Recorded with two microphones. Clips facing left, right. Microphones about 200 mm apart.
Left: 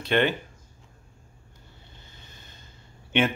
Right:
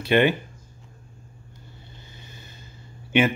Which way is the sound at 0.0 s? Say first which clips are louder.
Right 4 dB; 10° right (ahead or behind).